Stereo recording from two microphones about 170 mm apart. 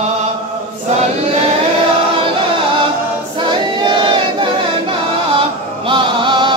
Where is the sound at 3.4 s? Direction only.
30° right (ahead or behind).